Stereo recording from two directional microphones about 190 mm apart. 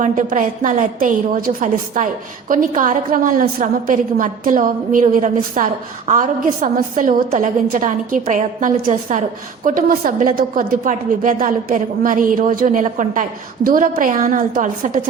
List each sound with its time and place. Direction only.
0.0 s a woman's voice: 40° right (ahead or behind)